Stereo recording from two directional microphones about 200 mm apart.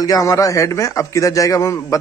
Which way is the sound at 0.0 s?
20° left (ahead or behind).